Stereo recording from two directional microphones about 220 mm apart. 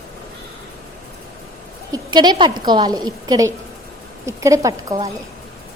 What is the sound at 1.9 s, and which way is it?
A woman's voice, 20° right (ahead or behind).